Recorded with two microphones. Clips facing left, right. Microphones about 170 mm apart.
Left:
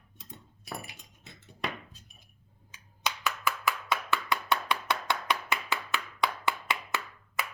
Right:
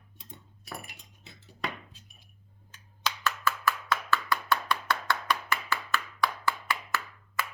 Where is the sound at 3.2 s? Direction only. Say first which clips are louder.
Right 2 dB; 15° left (ahead or behind).